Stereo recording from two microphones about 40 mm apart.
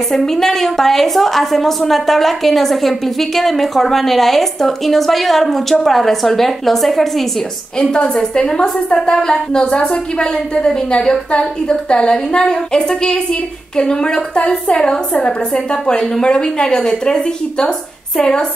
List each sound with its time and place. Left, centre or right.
0.1 s a woman's voice: centre
7.8 s a woman's voice: left